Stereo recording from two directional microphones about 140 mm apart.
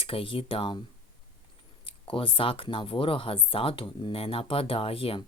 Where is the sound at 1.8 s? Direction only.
40° left (ahead or behind).